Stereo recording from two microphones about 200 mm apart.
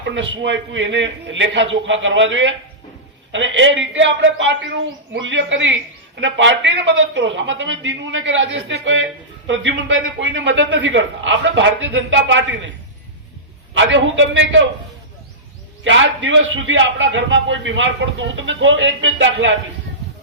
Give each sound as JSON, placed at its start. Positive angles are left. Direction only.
{"t": 0.0, "sound": "a man's voice", "side_deg": -65}
{"t": 13.7, "sound": "a man's voice", "side_deg": -70}
{"t": 15.8, "sound": "a man's voice", "side_deg": -70}